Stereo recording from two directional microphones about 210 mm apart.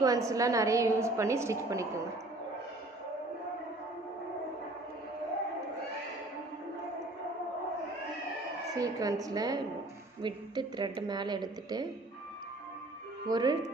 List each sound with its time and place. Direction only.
0.0 s a woman's voice: 15° right (ahead or behind)
8.8 s a woman's voice: 15° right (ahead or behind)
13.2 s a woman's voice: 20° right (ahead or behind)